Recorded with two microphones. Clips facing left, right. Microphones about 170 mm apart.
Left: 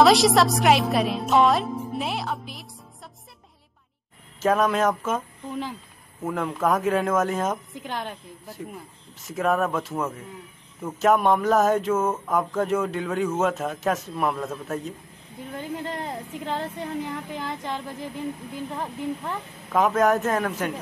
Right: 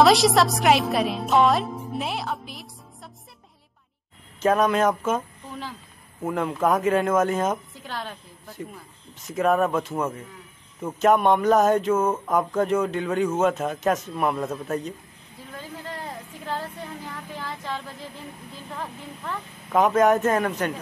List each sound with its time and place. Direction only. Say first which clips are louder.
0.0 s speech: even; centre (ahead or behind)
4.4 s speech: right 1 dB; centre (ahead or behind)
6.2 s speech: right 1 dB; centre (ahead or behind)
7.7 s a woman's voice: left 2 dB; 20° left (ahead or behind)
9.2 s speech: right 2 dB; centre (ahead or behind)
15.5 s a woman's voice: left 5 dB; 20° left (ahead or behind)
19.7 s speech: right 2 dB; centre (ahead or behind)